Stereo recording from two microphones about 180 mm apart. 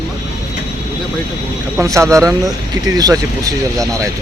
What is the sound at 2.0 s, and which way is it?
Speech, 15° right (ahead or behind).